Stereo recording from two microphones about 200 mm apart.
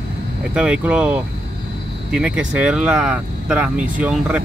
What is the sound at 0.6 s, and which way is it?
Speech, 5° right (ahead or behind).